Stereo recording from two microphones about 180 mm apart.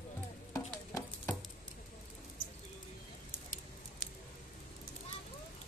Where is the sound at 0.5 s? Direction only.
15° left (ahead or behind).